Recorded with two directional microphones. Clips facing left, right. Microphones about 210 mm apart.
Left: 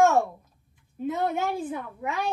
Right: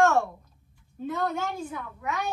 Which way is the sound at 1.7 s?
30° left (ahead or behind).